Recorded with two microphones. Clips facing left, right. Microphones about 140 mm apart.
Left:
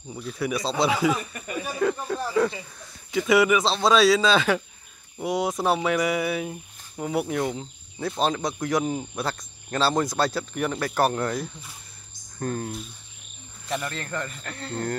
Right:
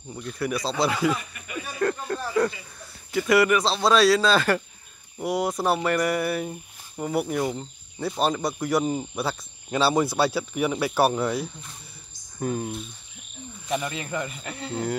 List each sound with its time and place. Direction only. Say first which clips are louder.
0.1 s speech: even; centre (ahead or behind)
1.3 s a sound: left 4 dB; 40° left (ahead or behind)
1.8 s speech: even; 5° left (ahead or behind)